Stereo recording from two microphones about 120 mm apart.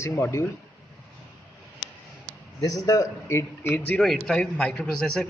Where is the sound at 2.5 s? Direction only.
30° left (ahead or behind); by 5.2 s 5° left (ahead or behind).